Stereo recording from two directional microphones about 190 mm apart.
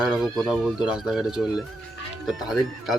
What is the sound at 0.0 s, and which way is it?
Speech, 5° right (ahead or behind).